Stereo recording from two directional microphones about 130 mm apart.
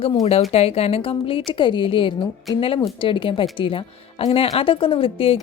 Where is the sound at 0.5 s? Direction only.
50° left (ahead or behind).